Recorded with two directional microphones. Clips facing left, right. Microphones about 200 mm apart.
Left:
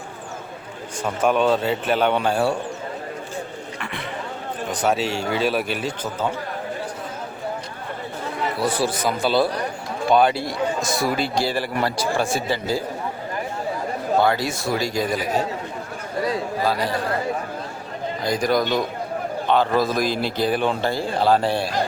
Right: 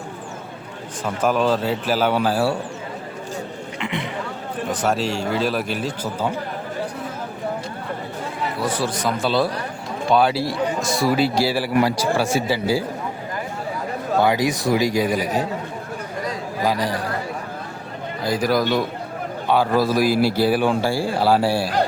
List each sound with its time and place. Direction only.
1.0 s a man's voice: centre (ahead or behind)
3.8 s a sound: 20° right (ahead or behind)
4.7 s a man's voice: centre (ahead or behind)
8.7 s a man's voice: 10° left (ahead or behind); by 12.8 s 10° right (ahead or behind)
14.2 s a man's voice: 15° right (ahead or behind)
16.6 s a man's voice: 15° right (ahead or behind)
18.2 s a man's voice: 5° right (ahead or behind)